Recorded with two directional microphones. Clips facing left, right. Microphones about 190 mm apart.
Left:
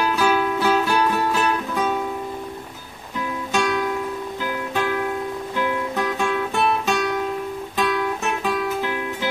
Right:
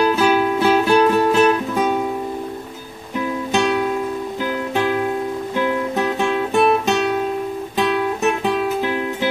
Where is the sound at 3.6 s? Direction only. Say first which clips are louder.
Right 3 dB; 25° right (ahead or behind).